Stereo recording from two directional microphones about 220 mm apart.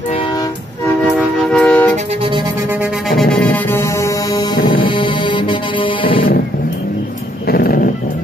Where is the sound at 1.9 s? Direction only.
25° right (ahead or behind).